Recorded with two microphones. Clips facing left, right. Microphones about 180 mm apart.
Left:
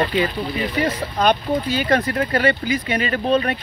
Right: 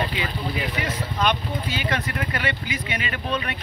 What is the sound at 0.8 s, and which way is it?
Speech, 40° left (ahead or behind).